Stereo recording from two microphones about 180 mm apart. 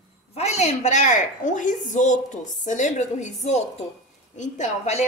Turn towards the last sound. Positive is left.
turn(degrees=40)  # may be behind; listen again after turning